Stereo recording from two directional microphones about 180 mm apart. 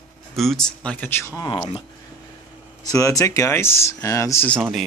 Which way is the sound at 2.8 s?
20° left (ahead or behind).